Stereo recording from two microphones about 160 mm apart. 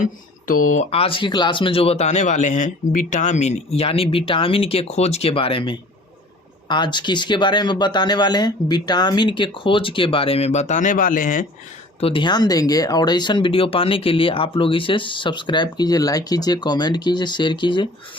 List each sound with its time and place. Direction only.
0.0 s speech: 55° left (ahead or behind)
11.9 s speech: 35° left (ahead or behind)